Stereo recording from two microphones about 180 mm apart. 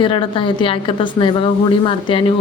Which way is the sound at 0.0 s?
30° left (ahead or behind).